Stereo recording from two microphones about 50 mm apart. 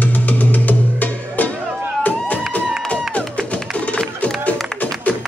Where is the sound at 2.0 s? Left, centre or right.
Left.